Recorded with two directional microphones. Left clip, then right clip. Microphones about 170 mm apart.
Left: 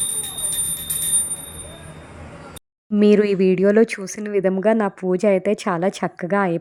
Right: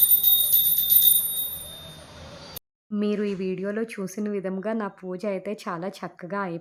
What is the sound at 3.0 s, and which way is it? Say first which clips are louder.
Speech: left 12 dB; 40° left (ahead or behind).